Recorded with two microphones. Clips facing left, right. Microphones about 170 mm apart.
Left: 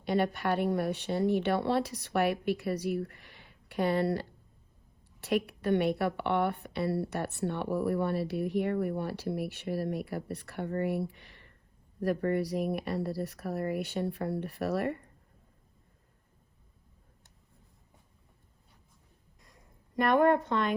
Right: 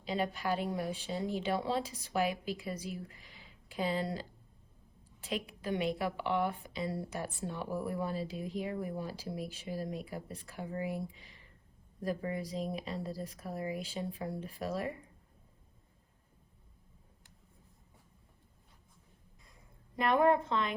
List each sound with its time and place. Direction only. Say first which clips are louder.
0.0 s a woman's voice: left 6 dB; 65° left (ahead or behind)